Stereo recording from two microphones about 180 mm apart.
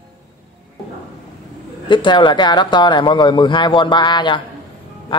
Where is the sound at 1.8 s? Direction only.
25° left (ahead or behind).